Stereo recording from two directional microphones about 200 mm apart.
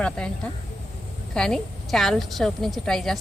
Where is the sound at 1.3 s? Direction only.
5° left (ahead or behind).